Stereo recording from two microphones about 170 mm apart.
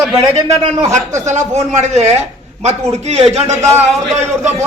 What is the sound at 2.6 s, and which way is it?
Speech, 40° right (ahead or behind).